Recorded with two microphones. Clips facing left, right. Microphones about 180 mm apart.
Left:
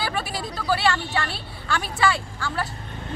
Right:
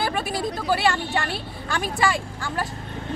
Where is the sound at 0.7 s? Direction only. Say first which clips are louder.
Even; 15° right (ahead or behind).